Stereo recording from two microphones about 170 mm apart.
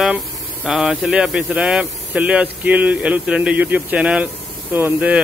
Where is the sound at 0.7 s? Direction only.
Centre (ahead or behind).